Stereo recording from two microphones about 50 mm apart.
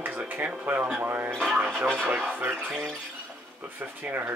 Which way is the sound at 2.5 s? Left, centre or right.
Right.